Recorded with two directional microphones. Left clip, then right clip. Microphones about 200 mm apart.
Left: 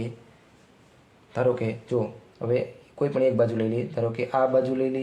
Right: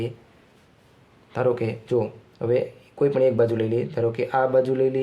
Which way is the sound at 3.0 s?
45° right (ahead or behind).